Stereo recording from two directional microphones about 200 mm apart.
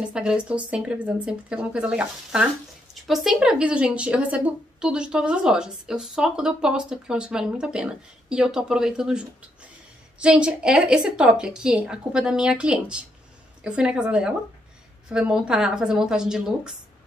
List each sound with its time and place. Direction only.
0.0 s speech: 5° right (ahead or behind)